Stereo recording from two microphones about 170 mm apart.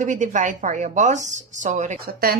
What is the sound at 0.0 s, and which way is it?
A woman's voice, 45° right (ahead or behind).